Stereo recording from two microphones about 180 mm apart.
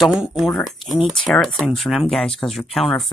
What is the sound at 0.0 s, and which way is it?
Speech, 5° right (ahead or behind).